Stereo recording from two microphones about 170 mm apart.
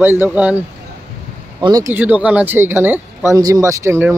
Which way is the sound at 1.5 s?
20° right (ahead or behind).